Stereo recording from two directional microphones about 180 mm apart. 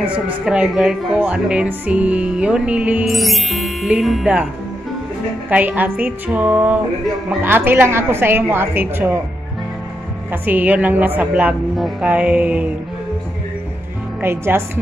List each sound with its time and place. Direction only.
0.5 s speech: 5° right (ahead or behind)
5.5 s a woman's voice: 10° right (ahead or behind)
10.3 s a woman's voice: 10° right (ahead or behind)
14.2 s a woman's voice: 10° right (ahead or behind)